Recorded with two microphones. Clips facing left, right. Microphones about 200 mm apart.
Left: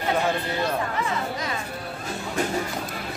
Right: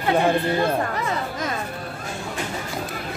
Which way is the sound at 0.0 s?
55° right (ahead or behind).